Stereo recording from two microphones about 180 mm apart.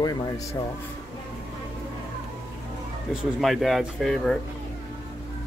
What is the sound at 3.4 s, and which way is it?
Speech, centre (ahead or behind).